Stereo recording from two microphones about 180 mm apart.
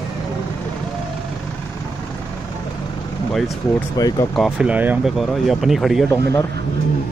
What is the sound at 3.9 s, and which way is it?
Speech, 20° left (ahead or behind).